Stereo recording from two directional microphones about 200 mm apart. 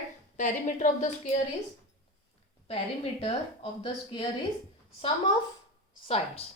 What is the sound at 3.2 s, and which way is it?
Speech, 25° left (ahead or behind).